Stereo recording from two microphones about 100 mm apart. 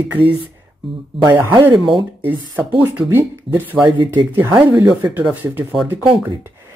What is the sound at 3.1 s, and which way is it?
Speech, 20° right (ahead or behind).